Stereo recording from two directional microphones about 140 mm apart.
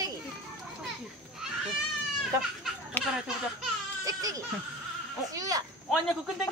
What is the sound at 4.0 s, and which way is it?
Music, 25° right (ahead or behind).